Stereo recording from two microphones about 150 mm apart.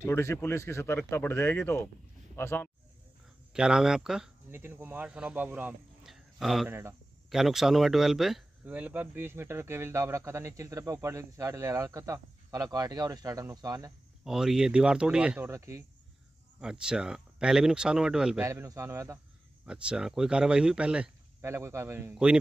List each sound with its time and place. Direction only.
0.0 s speech: 15° left (ahead or behind)
3.5 s speech: 5° right (ahead or behind)
4.5 s speech: 15° right (ahead or behind)
6.7 s a man's voice: 15° right (ahead or behind)
7.2 s speech: centre (ahead or behind); by 13.9 s 25° right (ahead or behind)
14.2 s speech: 5° right (ahead or behind)
15.5 s speech: 20° right (ahead or behind)
16.5 s speech: 5° right (ahead or behind)
18.4 s speech: 20° right (ahead or behind)
19.6 s speech: 5° right (ahead or behind)
21.5 s a man's voice: 20° right (ahead or behind)